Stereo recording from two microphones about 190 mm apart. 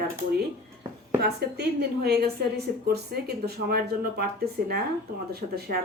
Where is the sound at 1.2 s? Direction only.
60° right (ahead or behind).